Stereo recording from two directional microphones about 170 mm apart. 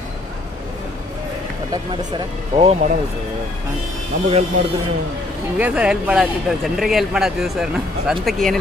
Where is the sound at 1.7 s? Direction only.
30° right (ahead or behind).